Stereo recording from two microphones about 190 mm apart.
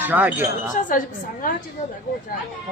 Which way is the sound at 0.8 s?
45° left (ahead or behind).